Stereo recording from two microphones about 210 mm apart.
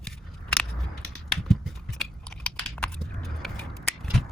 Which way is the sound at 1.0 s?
Centre (ahead or behind).